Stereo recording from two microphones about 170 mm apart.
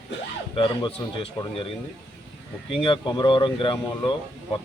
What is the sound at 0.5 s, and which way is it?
Speech, 30° left (ahead or behind).